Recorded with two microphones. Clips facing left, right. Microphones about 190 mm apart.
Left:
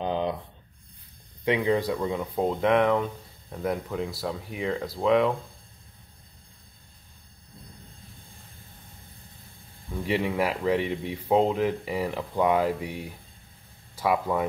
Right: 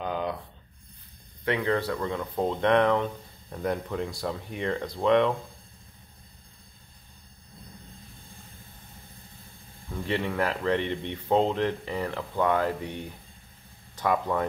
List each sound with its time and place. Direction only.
0.0 s a sound: 25° left (ahead or behind)
1.4 s speech: 15° left (ahead or behind)
10.0 s speech: 10° left (ahead or behind)